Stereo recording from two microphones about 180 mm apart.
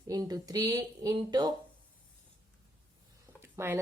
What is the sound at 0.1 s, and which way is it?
Speech, 20° right (ahead or behind).